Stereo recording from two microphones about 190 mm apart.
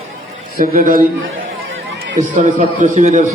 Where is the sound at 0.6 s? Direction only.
45° right (ahead or behind).